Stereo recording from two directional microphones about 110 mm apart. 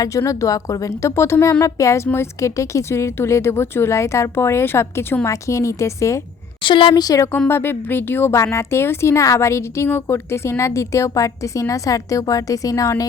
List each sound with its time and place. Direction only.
0.0 s a woman's voice: 30° left (ahead or behind)
6.6 s a woman's voice: 50° left (ahead or behind)
7.0 s speech: 35° left (ahead or behind)
7.3 s a woman's voice: 20° left (ahead or behind)